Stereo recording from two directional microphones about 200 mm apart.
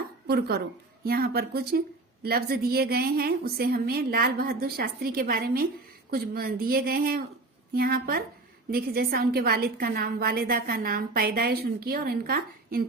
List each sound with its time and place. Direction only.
0.3 s a woman's voice: 50° right (ahead or behind)